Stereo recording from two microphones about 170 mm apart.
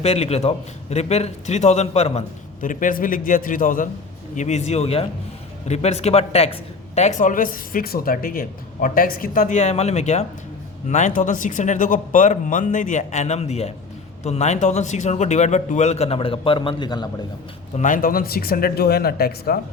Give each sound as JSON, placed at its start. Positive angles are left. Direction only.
{"t": 0.0, "sound": "a man's voice", "side_deg": 40}
{"t": 2.6, "sound": "speech", "side_deg": 50}
{"t": 4.4, "sound": "a man's voice", "side_deg": 40}
{"t": 17.7, "sound": "speech", "side_deg": 50}